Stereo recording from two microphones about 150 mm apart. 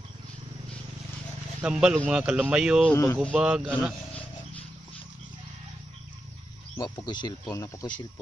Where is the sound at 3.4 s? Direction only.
5° right (ahead or behind).